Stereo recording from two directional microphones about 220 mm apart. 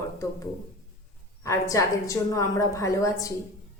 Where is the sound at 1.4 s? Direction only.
15° left (ahead or behind).